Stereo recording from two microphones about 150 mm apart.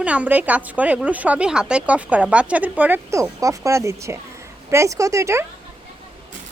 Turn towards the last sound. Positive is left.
turn(degrees=-20)  # may be behind; listen again after turning